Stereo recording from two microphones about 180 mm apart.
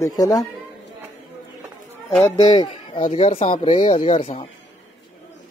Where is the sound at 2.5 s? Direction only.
30° left (ahead or behind).